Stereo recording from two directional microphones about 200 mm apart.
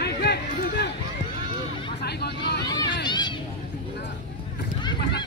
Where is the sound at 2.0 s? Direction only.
55° left (ahead or behind).